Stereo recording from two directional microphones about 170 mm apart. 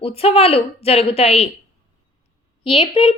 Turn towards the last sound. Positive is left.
turn(degrees=30)  # may be behind; listen again after turning